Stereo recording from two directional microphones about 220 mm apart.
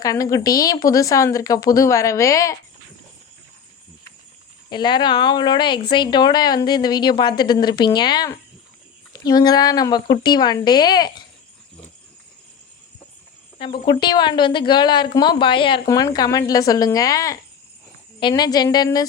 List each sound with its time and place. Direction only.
0.0 s a woman's voice: 15° left (ahead or behind)
4.7 s speech: 20° left (ahead or behind)
13.6 s speech: 25° left (ahead or behind)